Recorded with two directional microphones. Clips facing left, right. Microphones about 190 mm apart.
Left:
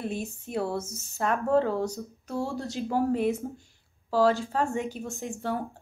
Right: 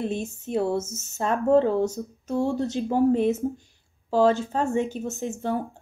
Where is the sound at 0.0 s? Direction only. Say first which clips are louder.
Right 4 dB; 25° right (ahead or behind).